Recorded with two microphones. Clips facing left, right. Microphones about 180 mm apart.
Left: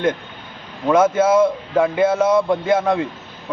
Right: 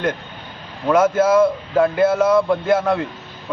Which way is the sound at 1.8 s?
20° left (ahead or behind).